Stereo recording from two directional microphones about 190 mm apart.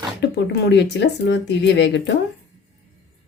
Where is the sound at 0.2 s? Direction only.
60° left (ahead or behind).